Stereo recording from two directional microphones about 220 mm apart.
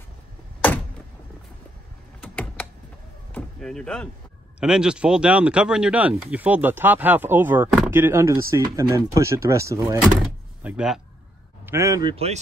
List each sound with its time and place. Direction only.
2.2 s computer keyboard: 5° left (ahead or behind)
3.3 s vehicle: 5° left (ahead or behind)
4.6 s speech: 5° right (ahead or behind); by 12.4 s 25° right (ahead or behind)